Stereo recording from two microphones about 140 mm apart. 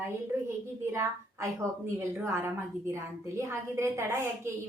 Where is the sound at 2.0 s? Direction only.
15° right (ahead or behind).